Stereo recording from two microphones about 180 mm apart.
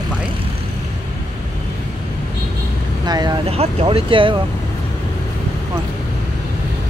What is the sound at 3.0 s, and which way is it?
Speech, 25° right (ahead or behind).